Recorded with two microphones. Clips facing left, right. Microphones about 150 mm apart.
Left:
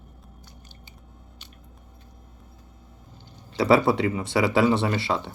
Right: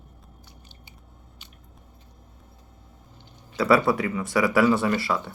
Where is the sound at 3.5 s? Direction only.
25° left (ahead or behind).